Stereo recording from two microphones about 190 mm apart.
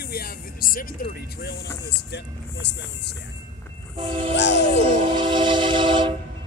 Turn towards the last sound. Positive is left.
turn(degrees=-25)  # may be behind; listen again after turning